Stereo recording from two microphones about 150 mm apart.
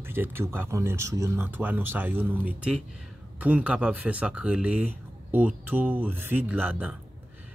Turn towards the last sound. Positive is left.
turn(degrees=-10)  # may be behind; listen again after turning